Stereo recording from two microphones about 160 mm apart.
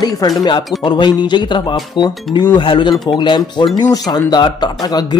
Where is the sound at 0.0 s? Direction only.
25° left (ahead or behind).